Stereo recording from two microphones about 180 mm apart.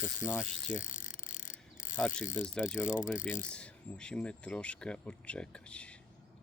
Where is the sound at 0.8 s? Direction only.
45° left (ahead or behind).